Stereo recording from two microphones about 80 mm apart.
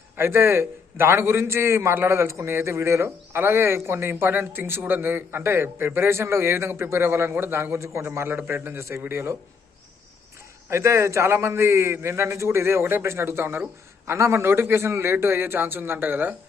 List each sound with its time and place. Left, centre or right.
0.2 s a man's voice: right
10.7 s a man's voice: right